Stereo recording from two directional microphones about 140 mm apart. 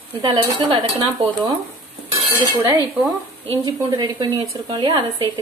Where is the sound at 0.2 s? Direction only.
35° right (ahead or behind).